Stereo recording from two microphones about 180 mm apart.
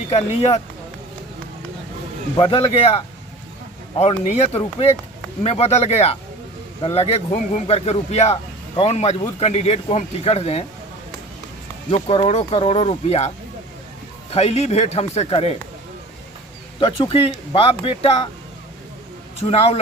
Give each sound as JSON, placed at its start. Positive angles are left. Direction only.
{"t": 0.3, "sound": "a man's voice", "side_deg": 35}
{"t": 2.3, "sound": "a man's voice", "side_deg": 30}
{"t": 11.9, "sound": "a man's voice", "side_deg": 30}
{"t": 16.8, "sound": "a man's voice", "side_deg": 30}
{"t": 19.4, "sound": "a man's voice", "side_deg": 35}